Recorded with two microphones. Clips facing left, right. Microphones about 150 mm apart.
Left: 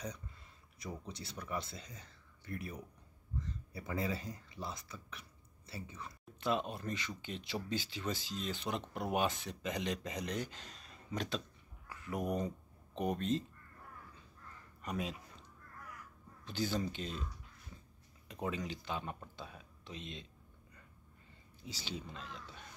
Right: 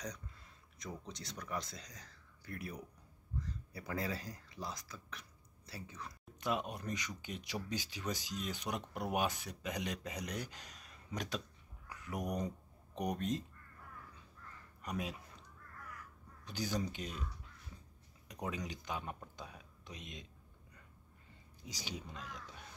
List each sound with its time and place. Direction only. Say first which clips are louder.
0.0 s speech: left 1 dB; 5° left (ahead or behind)
6.4 s speech: left 2 dB; 10° right (ahead or behind)
14.8 s a man's voice: left 1 dB; 10° right (ahead or behind)
16.4 s speech: left 2 dB; 10° right (ahead or behind)
18.7 s speech: left 2 dB; 10° right (ahead or behind)
21.6 s speech: left 2 dB; 15° right (ahead or behind)